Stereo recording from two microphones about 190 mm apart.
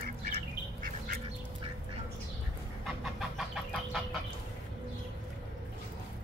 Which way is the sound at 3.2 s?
Centre (ahead or behind).